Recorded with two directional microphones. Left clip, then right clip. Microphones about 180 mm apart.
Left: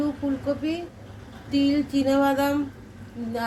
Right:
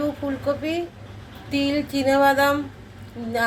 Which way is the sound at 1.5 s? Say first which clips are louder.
Even; 20° right (ahead or behind).